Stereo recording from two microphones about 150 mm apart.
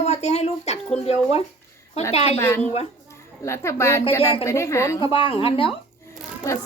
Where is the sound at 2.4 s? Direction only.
15° left (ahead or behind).